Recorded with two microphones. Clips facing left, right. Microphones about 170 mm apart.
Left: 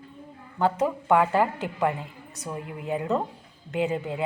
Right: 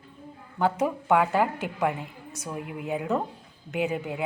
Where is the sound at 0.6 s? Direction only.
15° right (ahead or behind).